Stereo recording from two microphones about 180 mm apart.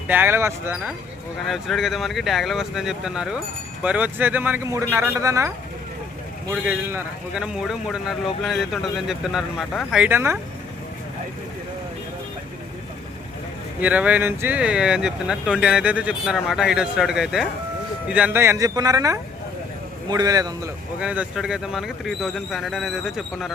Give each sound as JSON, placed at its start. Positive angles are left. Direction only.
{"t": 0.1, "sound": "speech", "side_deg": -10}
{"t": 1.5, "sound": "speech", "side_deg": 0}
{"t": 6.5, "sound": "speech", "side_deg": -10}
{"t": 13.8, "sound": "a man's voice", "side_deg": -10}
{"t": 21.0, "sound": "speech", "side_deg": -5}